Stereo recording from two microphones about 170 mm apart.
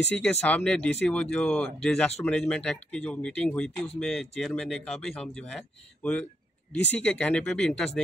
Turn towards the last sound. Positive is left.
turn(degrees=5)  # may be behind; listen again after turning